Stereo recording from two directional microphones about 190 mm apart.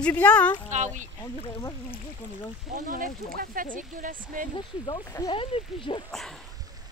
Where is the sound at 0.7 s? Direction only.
40° right (ahead or behind).